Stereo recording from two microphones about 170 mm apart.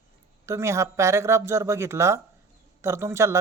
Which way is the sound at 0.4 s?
15° right (ahead or behind).